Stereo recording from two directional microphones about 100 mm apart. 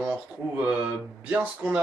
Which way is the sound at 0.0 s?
15° right (ahead or behind).